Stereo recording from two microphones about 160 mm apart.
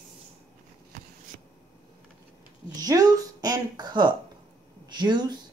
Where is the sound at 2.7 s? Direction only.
25° right (ahead or behind).